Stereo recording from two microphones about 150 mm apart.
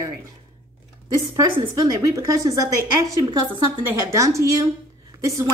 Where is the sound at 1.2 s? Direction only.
30° right (ahead or behind).